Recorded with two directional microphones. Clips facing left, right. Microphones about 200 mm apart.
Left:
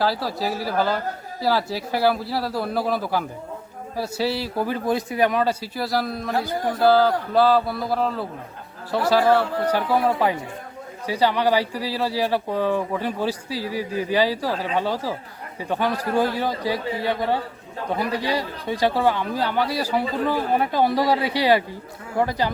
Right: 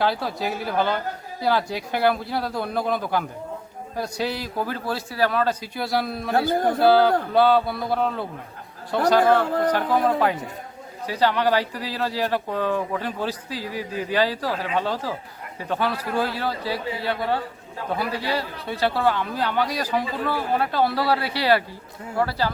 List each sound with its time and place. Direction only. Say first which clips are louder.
0.0 s a man's voice: left 1 dB; centre (ahead or behind)